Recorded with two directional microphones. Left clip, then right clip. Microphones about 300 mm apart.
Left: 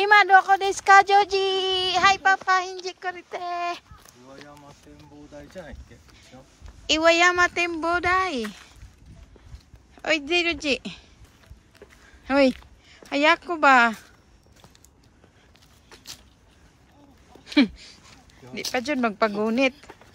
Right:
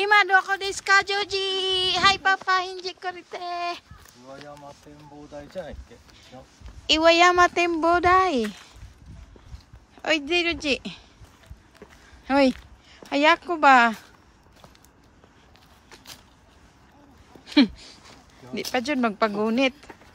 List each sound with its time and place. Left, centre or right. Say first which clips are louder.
0.0 s speech: left 3 dB; centre
4.5 s a sound: right 4 dB; right
6.9 s speech: right 1 dB; centre
9.9 s speech: even; centre
12.3 s speech: even; centre
17.5 s a sound: right 1 dB; centre
18.4 s speech: right 1 dB; centre